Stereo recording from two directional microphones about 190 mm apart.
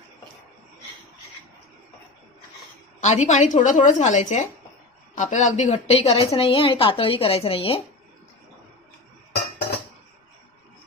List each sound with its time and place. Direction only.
3.0 s a woman's voice: 40° left (ahead or behind)